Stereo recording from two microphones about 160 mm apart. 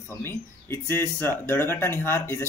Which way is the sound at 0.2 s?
15° left (ahead or behind).